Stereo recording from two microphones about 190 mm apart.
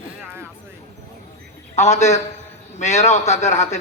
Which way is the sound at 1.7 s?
35° left (ahead or behind).